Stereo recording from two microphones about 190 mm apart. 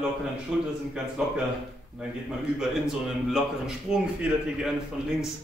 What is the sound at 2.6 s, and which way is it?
A man's voice, 5° right (ahead or behind).